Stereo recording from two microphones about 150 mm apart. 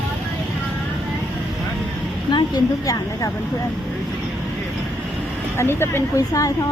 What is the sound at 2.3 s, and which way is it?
Speech, 25° left (ahead or behind).